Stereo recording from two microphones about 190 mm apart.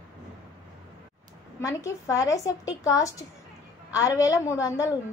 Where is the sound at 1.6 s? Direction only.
15° left (ahead or behind).